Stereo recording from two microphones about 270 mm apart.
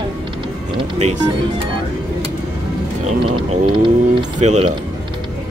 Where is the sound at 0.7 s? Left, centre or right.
Right.